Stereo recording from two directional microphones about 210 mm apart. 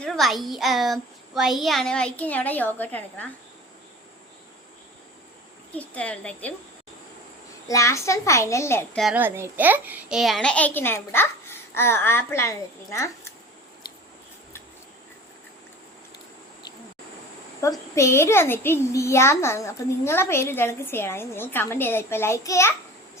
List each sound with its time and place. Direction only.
0.0 s a child's voice: centre (ahead or behind)
5.7 s a child's voice: 5° left (ahead or behind)
7.7 s a child's voice: 15° left (ahead or behind)
9.0 s a child's voice: 5° right (ahead or behind); by 13.3 s 15° left (ahead or behind)
17.6 s a child's voice: 15° left (ahead or behind)